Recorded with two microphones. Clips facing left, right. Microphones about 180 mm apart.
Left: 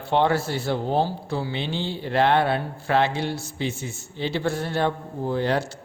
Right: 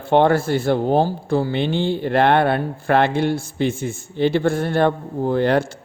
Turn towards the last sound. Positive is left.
turn(degrees=-55)  # may be behind; listen again after turning